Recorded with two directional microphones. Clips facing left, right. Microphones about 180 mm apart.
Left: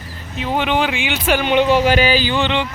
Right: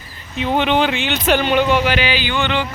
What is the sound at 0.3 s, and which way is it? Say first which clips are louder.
Speech: right 2 dB; 5° left (ahead or behind).